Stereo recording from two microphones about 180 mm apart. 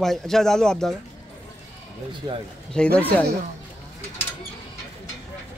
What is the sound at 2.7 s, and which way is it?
Speech, 5° left (ahead or behind).